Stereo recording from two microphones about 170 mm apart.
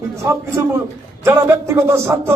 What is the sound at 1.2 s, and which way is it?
Speech, 15° right (ahead or behind).